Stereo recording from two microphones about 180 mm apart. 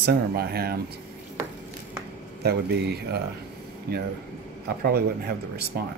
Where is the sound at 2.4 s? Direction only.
65° right (ahead or behind).